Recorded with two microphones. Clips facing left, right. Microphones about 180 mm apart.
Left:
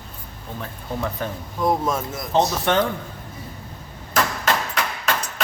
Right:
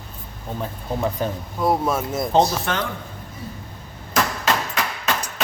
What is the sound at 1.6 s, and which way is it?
Speech, 5° right (ahead or behind).